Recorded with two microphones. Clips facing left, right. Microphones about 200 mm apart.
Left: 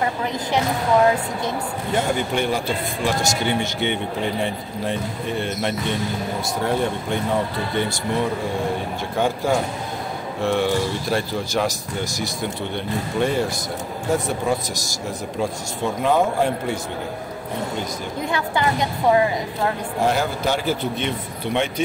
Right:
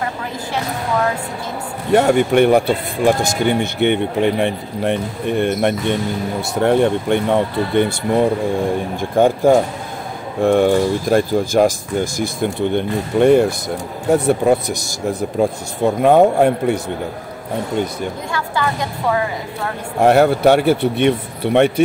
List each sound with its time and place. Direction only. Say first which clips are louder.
1.9 s speech: right 10 dB; 65° right (ahead or behind)
18.3 s a woman's voice: left 2 dB; 20° left (ahead or behind)
20.0 s speech: right 10 dB; 65° right (ahead or behind)